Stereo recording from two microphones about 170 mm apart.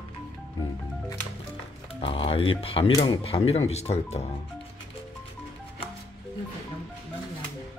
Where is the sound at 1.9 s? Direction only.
35° left (ahead or behind).